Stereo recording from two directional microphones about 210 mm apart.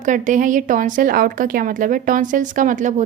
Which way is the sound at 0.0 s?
35° right (ahead or behind).